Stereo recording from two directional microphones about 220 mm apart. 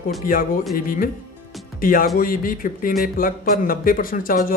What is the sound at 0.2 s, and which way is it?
Speech, 40° left (ahead or behind).